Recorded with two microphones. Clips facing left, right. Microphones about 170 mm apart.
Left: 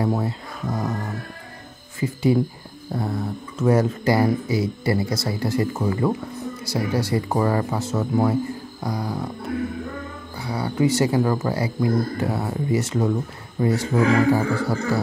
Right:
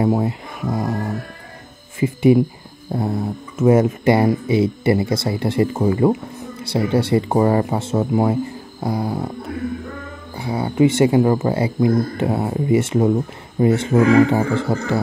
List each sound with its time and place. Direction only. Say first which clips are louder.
0.0 s speech: right 5 dB; 20° right (ahead or behind)
10.3 s speech: right 4 dB; 25° right (ahead or behind)